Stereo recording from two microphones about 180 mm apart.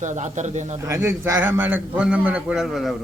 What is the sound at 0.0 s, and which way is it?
Speech, 40° right (ahead or behind).